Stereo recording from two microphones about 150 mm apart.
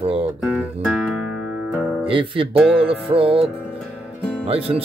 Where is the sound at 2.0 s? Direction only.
35° right (ahead or behind).